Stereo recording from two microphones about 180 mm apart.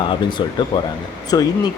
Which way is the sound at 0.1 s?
25° left (ahead or behind).